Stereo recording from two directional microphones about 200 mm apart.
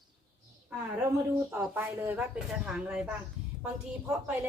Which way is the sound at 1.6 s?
10° right (ahead or behind).